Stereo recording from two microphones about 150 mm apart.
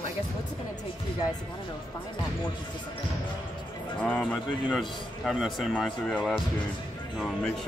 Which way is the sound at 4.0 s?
10° left (ahead or behind).